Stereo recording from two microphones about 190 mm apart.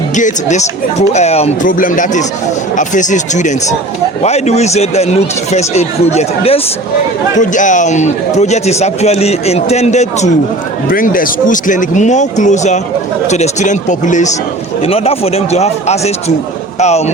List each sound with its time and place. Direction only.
0.2 s a man's voice: 40° left (ahead or behind)
10.8 s a man's voice: 45° left (ahead or behind)